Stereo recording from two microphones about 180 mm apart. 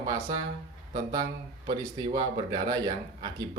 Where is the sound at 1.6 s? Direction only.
25° right (ahead or behind).